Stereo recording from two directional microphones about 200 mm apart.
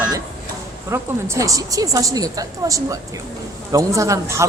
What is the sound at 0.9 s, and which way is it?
Speech, 15° right (ahead or behind).